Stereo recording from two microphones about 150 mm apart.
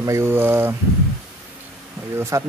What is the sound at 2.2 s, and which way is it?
Speech, 20° right (ahead or behind).